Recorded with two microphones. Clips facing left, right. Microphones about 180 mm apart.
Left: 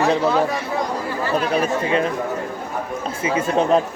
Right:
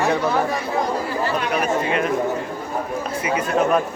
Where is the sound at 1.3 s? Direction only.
30° left (ahead or behind).